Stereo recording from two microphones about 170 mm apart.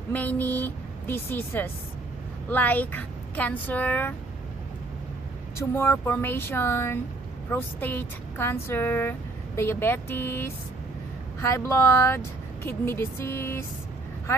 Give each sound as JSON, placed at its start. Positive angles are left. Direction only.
{"t": 0.1, "sound": "speech", "side_deg": 10}
{"t": 5.8, "sound": "speech", "side_deg": 15}